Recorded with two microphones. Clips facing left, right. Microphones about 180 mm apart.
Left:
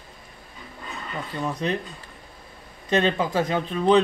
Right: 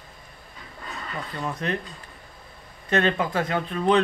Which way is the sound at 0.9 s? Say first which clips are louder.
Left 1 dB; 5° left (ahead or behind).